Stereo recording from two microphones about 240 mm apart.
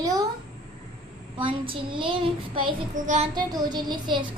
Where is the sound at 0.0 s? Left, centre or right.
Centre.